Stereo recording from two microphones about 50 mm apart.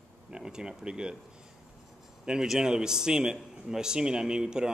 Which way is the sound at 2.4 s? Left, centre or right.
Centre.